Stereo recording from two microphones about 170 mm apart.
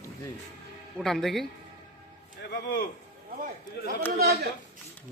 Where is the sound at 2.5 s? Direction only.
65° left (ahead or behind).